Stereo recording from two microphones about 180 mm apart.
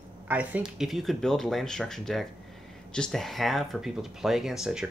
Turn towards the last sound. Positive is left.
turn(degrees=0)  # may be behind; listen again after turning